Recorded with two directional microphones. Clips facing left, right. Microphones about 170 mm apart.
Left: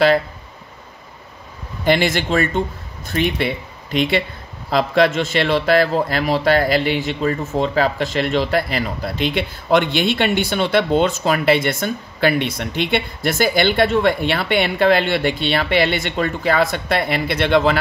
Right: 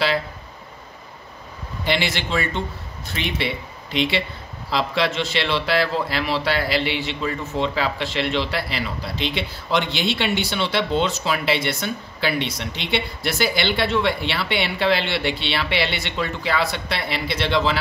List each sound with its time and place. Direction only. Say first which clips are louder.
1.9 s a man's voice: left 7 dB; 50° left (ahead or behind)